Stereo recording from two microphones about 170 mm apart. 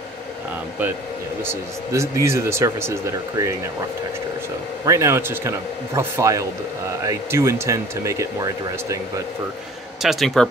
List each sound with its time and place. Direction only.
1.4 s speech: 15° right (ahead or behind)
4.8 s speech: 15° right (ahead or behind)
10.0 s speech: centre (ahead or behind)